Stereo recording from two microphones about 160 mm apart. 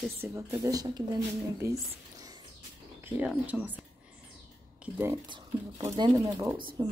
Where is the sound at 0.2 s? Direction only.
20° right (ahead or behind).